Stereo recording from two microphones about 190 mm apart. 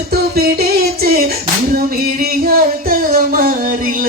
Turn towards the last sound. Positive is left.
turn(degrees=-50)  # may be behind; listen again after turning